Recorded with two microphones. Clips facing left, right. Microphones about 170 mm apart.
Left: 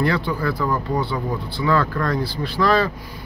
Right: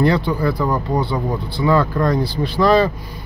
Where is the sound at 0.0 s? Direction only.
20° right (ahead or behind).